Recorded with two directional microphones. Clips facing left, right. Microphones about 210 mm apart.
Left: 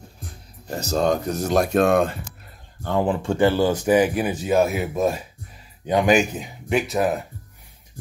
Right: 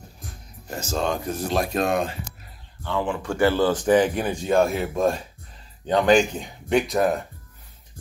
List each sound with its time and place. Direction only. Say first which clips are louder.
0.2 s speech: left 1 dB; 35° left (ahead or behind)
3.2 s speech: right 1 dB; 20° left (ahead or behind); by 7.2 s 5° left (ahead or behind)